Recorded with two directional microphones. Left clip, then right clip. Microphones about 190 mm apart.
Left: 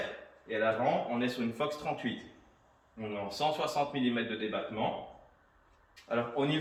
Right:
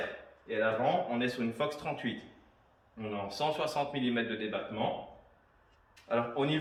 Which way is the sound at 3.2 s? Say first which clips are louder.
Left 1 dB; 10° right (ahead or behind).